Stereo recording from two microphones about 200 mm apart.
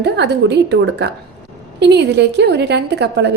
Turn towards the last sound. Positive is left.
turn(degrees=-60)  # may be behind; listen again after turning